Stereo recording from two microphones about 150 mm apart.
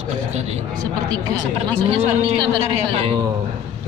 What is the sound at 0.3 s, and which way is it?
Speech, 45° right (ahead or behind).